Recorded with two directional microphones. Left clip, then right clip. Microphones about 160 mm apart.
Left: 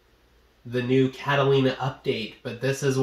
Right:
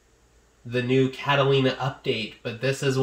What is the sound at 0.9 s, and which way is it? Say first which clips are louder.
Speech: even; 10° right (ahead or behind).